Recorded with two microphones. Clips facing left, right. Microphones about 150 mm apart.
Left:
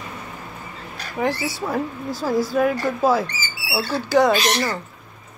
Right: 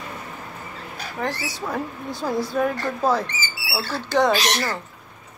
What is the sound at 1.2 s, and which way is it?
Speech, 10° left (ahead or behind).